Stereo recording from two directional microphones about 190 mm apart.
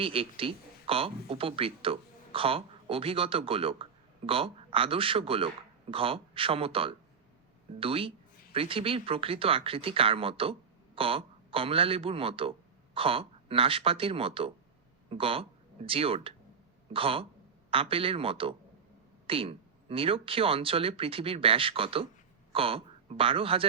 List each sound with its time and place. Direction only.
0.0 s speech: 30° right (ahead or behind)